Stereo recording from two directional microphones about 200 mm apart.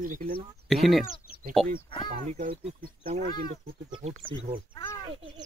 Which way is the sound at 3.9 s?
25° right (ahead or behind).